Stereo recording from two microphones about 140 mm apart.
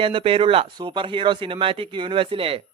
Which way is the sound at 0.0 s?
40° right (ahead or behind).